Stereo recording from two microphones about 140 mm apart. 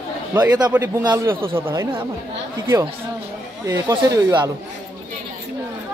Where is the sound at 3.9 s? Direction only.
30° right (ahead or behind).